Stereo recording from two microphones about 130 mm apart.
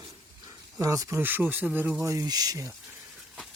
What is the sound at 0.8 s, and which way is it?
Speech, 25° right (ahead or behind).